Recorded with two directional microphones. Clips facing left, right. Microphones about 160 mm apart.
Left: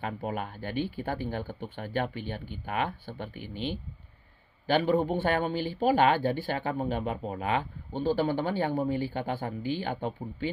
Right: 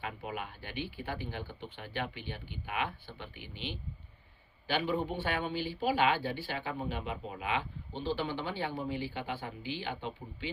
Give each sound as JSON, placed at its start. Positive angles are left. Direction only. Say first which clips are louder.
{"t": 0.0, "sound": "speech", "louder": "left 6 dB", "side_deg": 45}